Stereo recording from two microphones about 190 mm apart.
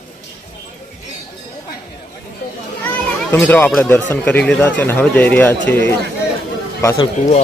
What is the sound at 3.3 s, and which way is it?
A man's voice, 10° left (ahead or behind).